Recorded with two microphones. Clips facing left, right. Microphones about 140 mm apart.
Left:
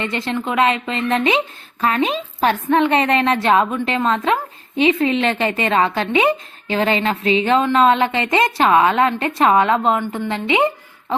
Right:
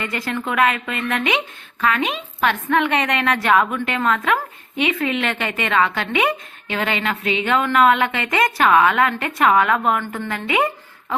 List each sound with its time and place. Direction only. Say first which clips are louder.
0.0 s a woman's voice: left 3 dB; 25° left (ahead or behind)